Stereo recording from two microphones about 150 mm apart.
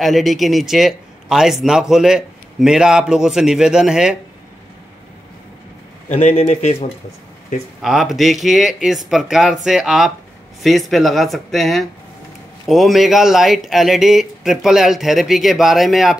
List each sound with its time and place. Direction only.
0.0 s speech: centre (ahead or behind)
6.0 s a man's voice: 45° left (ahead or behind)
7.8 s speech: centre (ahead or behind)